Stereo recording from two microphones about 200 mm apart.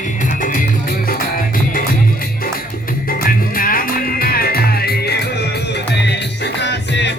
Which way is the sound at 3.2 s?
45° left (ahead or behind).